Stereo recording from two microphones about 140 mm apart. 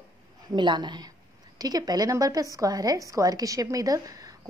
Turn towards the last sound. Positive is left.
turn(degrees=-25)  # may be behind; listen again after turning